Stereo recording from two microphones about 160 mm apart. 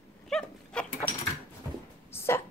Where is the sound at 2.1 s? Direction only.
15° left (ahead or behind).